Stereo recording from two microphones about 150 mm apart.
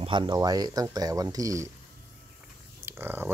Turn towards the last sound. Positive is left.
turn(degrees=-15)  # may be behind; listen again after turning